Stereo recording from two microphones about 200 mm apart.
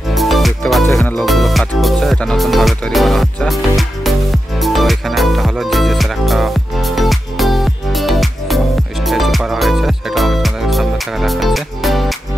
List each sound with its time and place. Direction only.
0.1 s music: centre (ahead or behind)